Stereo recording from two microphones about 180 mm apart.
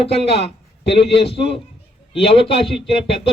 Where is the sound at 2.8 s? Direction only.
30° left (ahead or behind).